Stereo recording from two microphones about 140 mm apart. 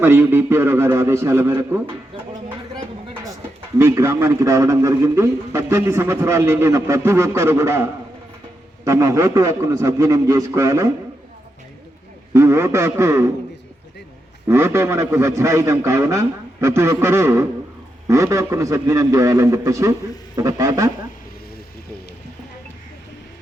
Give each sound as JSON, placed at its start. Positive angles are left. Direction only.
{"t": 0.0, "sound": "a man's voice", "side_deg": -15}
{"t": 3.8, "sound": "a man's voice", "side_deg": -20}
{"t": 12.3, "sound": "a man's voice", "side_deg": -20}
{"t": 14.4, "sound": "a man's voice", "side_deg": -20}